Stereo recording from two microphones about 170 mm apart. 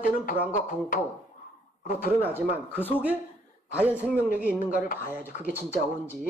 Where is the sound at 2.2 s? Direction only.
10° right (ahead or behind).